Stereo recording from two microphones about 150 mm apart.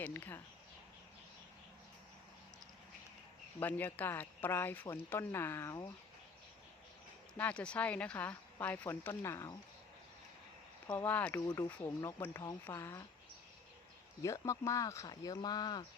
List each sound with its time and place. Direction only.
0.0 s speech: 15° left (ahead or behind)
3.6 s speech: 10° left (ahead or behind)
7.3 s speech: 10° left (ahead or behind)
10.9 s speech: 10° left (ahead or behind)
14.2 s speech: 20° left (ahead or behind)